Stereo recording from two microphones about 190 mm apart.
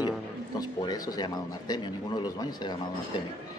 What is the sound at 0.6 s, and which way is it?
A man's voice, 20° left (ahead or behind).